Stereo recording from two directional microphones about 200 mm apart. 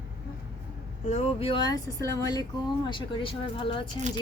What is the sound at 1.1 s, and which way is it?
A woman's voice, 30° left (ahead or behind).